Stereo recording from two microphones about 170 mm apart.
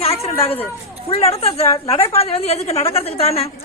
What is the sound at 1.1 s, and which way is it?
A woman's voice, 35° left (ahead or behind).